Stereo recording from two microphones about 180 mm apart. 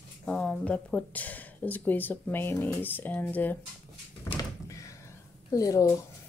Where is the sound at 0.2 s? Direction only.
5° left (ahead or behind).